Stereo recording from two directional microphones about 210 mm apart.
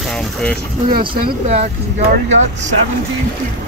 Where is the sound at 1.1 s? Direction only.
35° right (ahead or behind).